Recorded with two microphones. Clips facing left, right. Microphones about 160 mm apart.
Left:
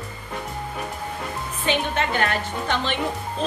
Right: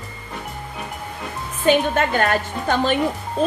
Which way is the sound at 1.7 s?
45° right (ahead or behind).